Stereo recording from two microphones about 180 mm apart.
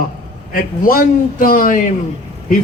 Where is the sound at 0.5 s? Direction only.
50° left (ahead or behind).